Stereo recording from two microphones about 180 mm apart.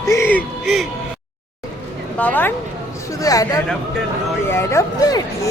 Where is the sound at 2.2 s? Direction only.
10° left (ahead or behind).